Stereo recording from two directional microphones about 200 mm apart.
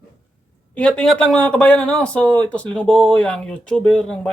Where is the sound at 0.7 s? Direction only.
5° left (ahead or behind).